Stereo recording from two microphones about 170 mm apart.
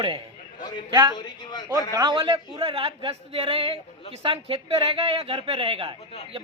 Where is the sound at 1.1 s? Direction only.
25° left (ahead or behind).